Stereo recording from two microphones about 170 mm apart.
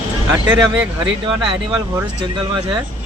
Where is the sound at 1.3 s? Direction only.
30° right (ahead or behind).